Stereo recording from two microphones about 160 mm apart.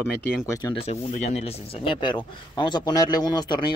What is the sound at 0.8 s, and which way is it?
Speech, 40° left (ahead or behind).